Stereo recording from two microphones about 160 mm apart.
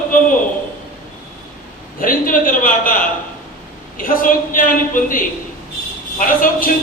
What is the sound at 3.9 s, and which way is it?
Speech, 60° left (ahead or behind).